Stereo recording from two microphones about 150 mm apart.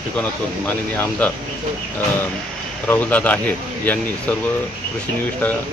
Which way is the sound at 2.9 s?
10° left (ahead or behind).